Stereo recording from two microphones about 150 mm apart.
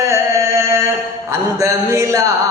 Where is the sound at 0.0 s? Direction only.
20° right (ahead or behind).